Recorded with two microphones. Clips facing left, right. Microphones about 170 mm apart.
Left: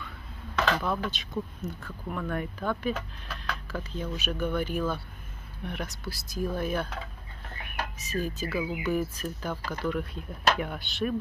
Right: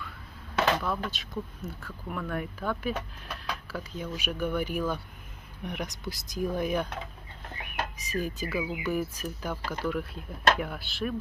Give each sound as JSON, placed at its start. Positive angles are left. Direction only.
{"t": 0.7, "sound": "speech", "side_deg": 0}